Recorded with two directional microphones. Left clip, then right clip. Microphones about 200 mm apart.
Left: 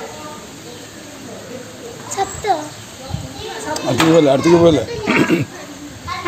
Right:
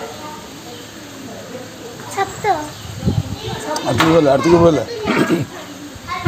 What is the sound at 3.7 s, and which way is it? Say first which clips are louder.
Speech: left 1 dB; 15° left (ahead or behind).